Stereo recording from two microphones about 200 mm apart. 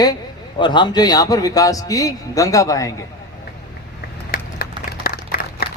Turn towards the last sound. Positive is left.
turn(degrees=50)  # may be behind; listen again after turning